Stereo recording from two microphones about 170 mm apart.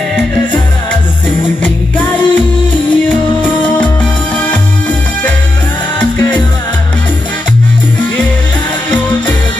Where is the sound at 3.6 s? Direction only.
30° left (ahead or behind).